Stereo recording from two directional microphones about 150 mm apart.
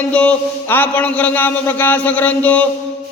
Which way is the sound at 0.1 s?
10° left (ahead or behind).